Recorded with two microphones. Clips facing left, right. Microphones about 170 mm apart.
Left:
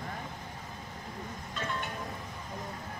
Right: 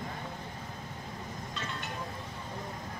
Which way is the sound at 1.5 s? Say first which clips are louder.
Left 6 dB; 50° left (ahead or behind).